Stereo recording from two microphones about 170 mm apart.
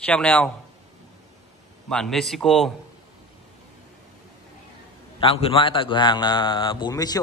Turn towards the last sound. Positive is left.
turn(degrees=25)  # may be behind; listen again after turning